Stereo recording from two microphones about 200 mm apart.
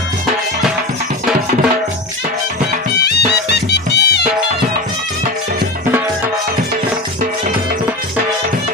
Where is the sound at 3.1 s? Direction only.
55° left (ahead or behind).